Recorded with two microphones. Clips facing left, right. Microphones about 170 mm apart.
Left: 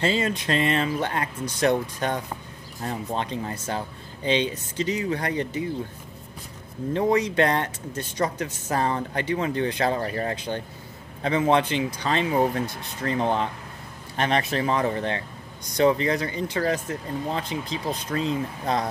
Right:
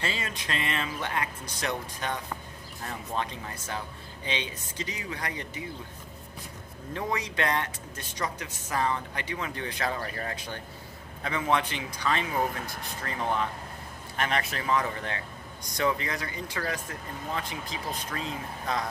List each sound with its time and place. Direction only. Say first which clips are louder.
0.0 s speech: left 10 dB; 30° left (ahead or behind)
2.8 s a man's voice: left 5 dB; 30° left (ahead or behind)
6.9 s a man's voice: left 10 dB; 35° left (ahead or behind)